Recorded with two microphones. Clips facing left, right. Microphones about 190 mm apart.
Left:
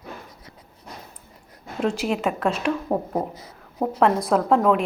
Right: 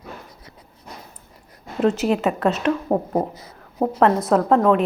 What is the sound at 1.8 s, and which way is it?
Speech, 5° right (ahead or behind).